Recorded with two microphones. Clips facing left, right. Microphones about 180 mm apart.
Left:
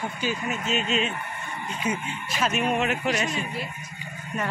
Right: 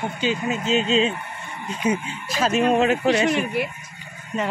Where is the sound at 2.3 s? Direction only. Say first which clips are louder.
Right 6 dB; 35° right (ahead or behind).